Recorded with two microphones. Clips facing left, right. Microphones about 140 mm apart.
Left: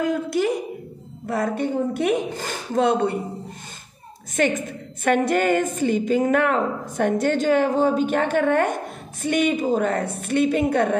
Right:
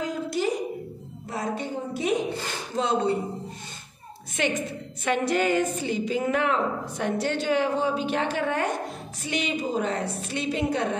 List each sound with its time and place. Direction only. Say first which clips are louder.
0.0 s a woman's voice: left 5 dB; 55° left (ahead or behind)
4.4 s a woman's voice: left 5 dB; 50° left (ahead or behind)